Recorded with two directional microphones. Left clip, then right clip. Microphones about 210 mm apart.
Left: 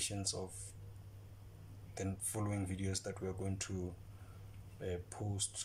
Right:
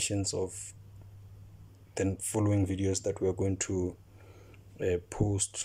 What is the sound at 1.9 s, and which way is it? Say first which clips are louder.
Speech: right 12 dB; 35° right (ahead or behind).